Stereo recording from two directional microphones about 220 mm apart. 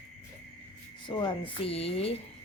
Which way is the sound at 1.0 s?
20° left (ahead or behind).